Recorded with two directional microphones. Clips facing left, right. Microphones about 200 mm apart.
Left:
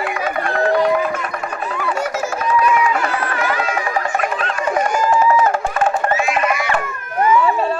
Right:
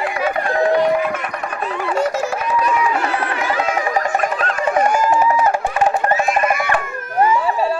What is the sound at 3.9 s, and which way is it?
Music, 40° right (ahead or behind).